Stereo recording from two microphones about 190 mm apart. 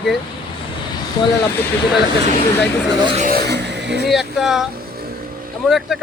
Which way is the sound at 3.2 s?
50° right (ahead or behind).